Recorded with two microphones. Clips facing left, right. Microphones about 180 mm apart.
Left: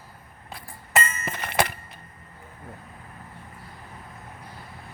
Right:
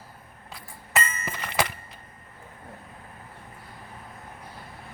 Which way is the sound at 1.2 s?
55° left (ahead or behind).